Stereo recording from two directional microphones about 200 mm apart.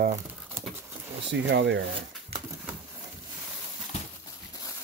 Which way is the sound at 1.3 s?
65° right (ahead or behind).